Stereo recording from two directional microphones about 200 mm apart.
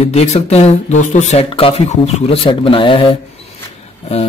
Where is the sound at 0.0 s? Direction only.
35° left (ahead or behind).